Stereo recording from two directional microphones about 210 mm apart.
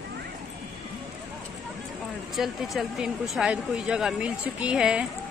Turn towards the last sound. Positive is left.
turn(degrees=-5)  # may be behind; listen again after turning